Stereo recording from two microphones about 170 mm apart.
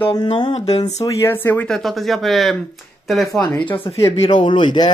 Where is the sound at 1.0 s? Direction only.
15° left (ahead or behind); by 3.4 s centre (ahead or behind).